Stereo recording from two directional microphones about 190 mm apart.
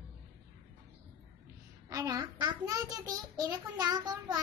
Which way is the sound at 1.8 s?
20° right (ahead or behind).